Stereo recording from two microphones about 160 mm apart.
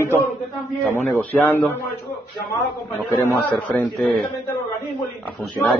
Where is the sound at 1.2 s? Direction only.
10° left (ahead or behind).